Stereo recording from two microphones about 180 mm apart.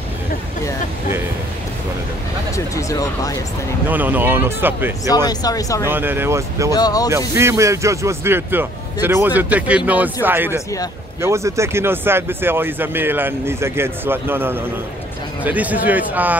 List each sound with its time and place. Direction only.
2.5 s speech: 20° left (ahead or behind)
3.9 s speech: 10° right (ahead or behind)
5.1 s speech: 20° left (ahead or behind)
5.9 s speech: 10° right (ahead or behind)
6.7 s speech: 20° left (ahead or behind)
7.1 s speech: 15° right (ahead or behind)